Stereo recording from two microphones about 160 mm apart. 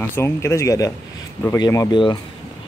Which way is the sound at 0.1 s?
15° left (ahead or behind).